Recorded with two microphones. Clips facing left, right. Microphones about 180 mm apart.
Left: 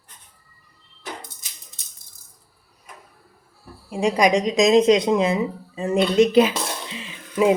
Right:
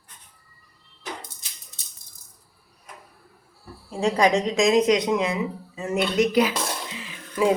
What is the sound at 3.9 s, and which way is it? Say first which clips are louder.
Speech: left 2 dB; 15° left (ahead or behind).